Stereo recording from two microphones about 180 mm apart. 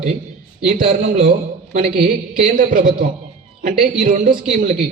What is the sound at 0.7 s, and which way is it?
Speech, 45° right (ahead or behind).